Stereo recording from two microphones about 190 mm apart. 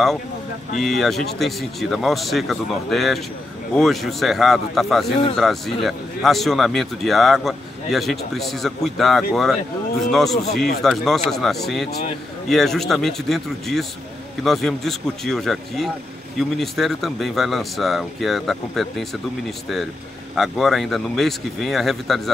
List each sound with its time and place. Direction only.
0.7 s speech: centre (ahead or behind)
20.3 s speech: centre (ahead or behind)